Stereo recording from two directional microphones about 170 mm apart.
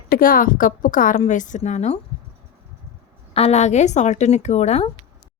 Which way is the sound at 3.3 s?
40° left (ahead or behind).